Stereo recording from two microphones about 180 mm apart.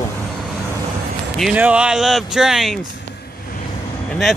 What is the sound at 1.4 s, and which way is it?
Speech, 5° right (ahead or behind).